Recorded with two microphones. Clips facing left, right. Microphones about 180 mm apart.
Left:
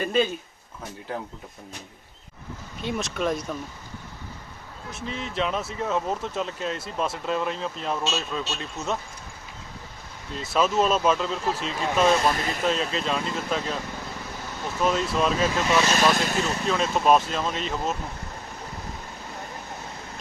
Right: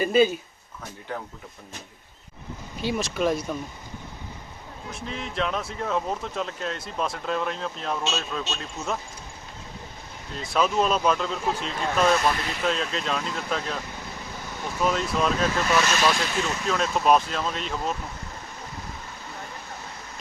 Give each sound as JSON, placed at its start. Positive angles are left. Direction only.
{"t": 0.0, "sound": "speech", "side_deg": -5}
{"t": 2.8, "sound": "speech", "side_deg": 0}
{"t": 5.0, "sound": "speech", "side_deg": 0}
{"t": 10.5, "sound": "speech", "side_deg": 5}
{"t": 12.3, "sound": "speech", "side_deg": 45}
{"t": 12.6, "sound": "speech", "side_deg": 0}
{"t": 14.8, "sound": "speech", "side_deg": 0}
{"t": 15.9, "sound": "speech", "side_deg": 45}
{"t": 16.6, "sound": "speech", "side_deg": 0}